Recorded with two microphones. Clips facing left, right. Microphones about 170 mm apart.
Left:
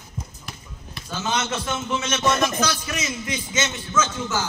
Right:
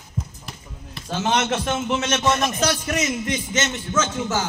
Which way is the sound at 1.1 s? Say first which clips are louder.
Right 4 dB; 55° right (ahead or behind).